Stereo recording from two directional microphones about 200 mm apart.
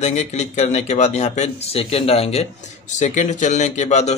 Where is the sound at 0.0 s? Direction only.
35° left (ahead or behind).